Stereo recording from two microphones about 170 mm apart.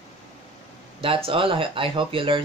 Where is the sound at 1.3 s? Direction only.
30° right (ahead or behind).